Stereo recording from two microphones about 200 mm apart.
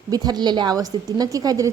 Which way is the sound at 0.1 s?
20° right (ahead or behind).